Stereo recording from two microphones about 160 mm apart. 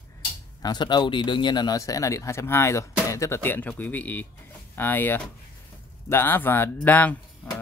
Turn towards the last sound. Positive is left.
turn(degrees=10)  # may be behind; listen again after turning